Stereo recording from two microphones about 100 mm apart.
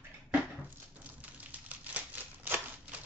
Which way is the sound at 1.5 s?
15° right (ahead or behind).